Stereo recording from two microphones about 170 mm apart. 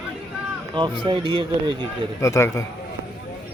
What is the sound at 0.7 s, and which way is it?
Speech, 30° right (ahead or behind).